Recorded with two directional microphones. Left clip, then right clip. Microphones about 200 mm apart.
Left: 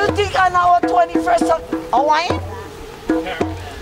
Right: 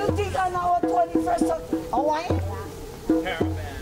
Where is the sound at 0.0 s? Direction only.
15° left (ahead or behind).